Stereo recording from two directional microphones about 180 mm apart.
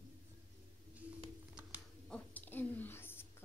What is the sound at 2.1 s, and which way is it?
Whispering, 5° left (ahead or behind).